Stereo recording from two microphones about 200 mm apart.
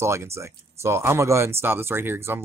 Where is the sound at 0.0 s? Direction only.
15° right (ahead or behind).